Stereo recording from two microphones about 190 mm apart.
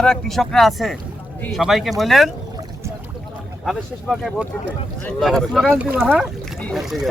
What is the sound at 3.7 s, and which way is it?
A man's voice, centre (ahead or behind).